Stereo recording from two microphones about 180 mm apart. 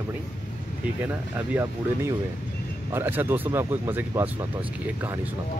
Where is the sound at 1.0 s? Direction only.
10° right (ahead or behind).